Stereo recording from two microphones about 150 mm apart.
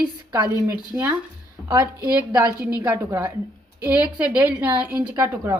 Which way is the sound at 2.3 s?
30° right (ahead or behind).